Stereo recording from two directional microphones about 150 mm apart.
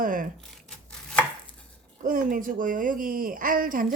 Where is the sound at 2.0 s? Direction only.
65° right (ahead or behind).